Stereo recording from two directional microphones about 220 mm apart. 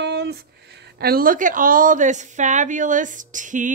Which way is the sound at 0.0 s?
50° right (ahead or behind).